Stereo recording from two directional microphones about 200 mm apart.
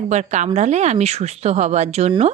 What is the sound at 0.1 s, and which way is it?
A woman's voice, 35° right (ahead or behind).